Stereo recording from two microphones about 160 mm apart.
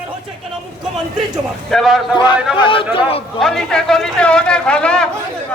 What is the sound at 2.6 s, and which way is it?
Speech, 35° left (ahead or behind).